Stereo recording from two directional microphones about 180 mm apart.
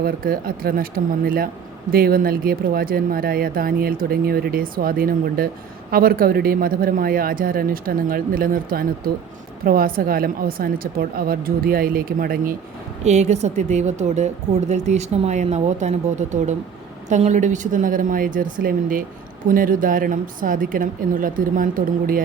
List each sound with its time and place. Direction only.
0.0 s speech: 55° right (ahead or behind)
13.1 s speech: 40° right (ahead or behind)